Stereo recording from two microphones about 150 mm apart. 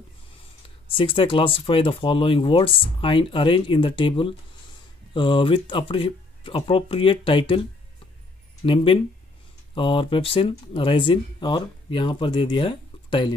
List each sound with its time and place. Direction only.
0.8 s speech: 35° left (ahead or behind)
8.6 s speech: 35° left (ahead or behind)